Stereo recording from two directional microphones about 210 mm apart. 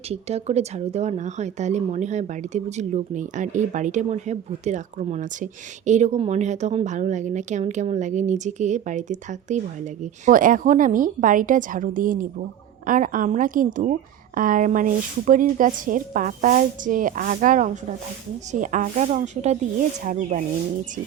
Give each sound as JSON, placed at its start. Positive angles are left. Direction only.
{"t": 0.1, "sound": "speech", "side_deg": -30}